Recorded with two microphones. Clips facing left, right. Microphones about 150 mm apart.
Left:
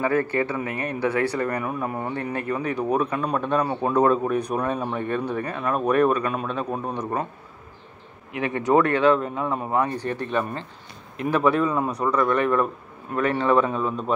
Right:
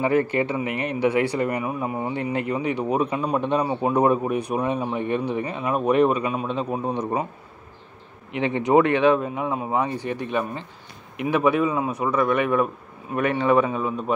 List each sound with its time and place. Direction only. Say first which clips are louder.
0.0 s a man's voice: right 2 dB; 20° right (ahead or behind)
8.3 s speech: right 1 dB; 25° right (ahead or behind)